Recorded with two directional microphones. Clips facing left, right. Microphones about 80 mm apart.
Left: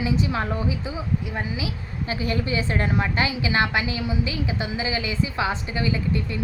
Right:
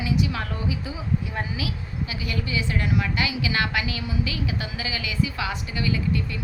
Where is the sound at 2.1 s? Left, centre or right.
Left.